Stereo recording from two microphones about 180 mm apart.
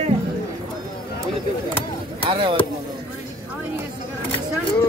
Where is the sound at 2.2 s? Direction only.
30° right (ahead or behind).